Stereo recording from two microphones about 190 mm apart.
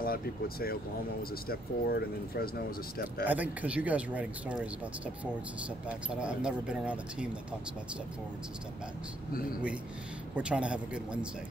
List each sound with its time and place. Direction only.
0.0 s speech: 50° left (ahead or behind)
3.3 s speech: 10° right (ahead or behind)
5.9 s speech: 5° right (ahead or behind)
10.3 s speech: 5° right (ahead or behind)